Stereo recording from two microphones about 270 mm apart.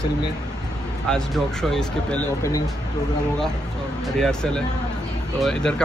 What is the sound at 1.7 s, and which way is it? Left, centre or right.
Speech, centre.